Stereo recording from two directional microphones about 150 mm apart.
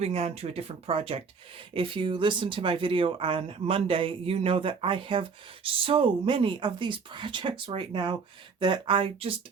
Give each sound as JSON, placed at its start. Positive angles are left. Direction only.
{"t": 0.0, "sound": "speech", "side_deg": -45}